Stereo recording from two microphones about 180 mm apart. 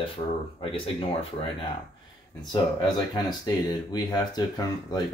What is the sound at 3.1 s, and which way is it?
Speech, 20° left (ahead or behind).